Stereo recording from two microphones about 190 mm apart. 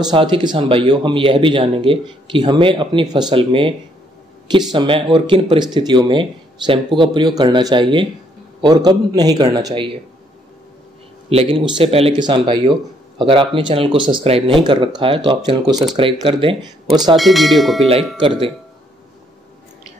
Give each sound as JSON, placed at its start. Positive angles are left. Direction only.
{"t": 0.0, "sound": "speech", "side_deg": -25}
{"t": 4.7, "sound": "speech", "side_deg": -25}
{"t": 11.2, "sound": "speech", "side_deg": -30}
{"t": 15.7, "sound": "speech", "side_deg": 0}
{"t": 16.3, "sound": "speech", "side_deg": -25}
{"t": 17.2, "sound": "speech", "side_deg": 0}
{"t": 18.1, "sound": "speech", "side_deg": -25}